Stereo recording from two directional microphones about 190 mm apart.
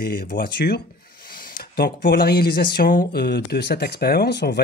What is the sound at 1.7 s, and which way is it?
Speech, 50° left (ahead or behind).